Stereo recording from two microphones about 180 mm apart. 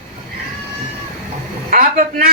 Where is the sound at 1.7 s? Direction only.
50° right (ahead or behind).